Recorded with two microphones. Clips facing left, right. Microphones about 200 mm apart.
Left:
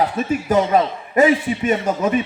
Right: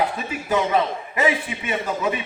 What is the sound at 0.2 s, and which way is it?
A man's voice, 45° left (ahead or behind).